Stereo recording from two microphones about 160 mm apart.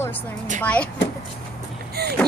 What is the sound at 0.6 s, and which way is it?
Speech, 10° left (ahead or behind).